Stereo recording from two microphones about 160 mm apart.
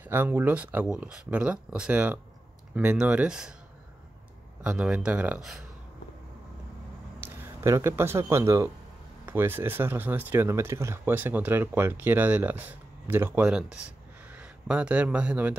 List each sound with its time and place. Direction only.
0.0 s speech: 10° right (ahead or behind)
4.6 s speech: 5° right (ahead or behind)
7.2 s speech: 15° right (ahead or behind)